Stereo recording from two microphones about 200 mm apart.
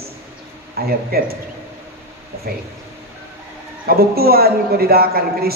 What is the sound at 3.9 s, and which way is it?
A woman's voice, 50° right (ahead or behind).